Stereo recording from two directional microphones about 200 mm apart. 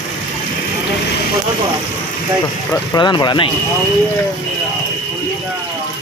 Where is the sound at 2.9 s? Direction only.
20° left (ahead or behind).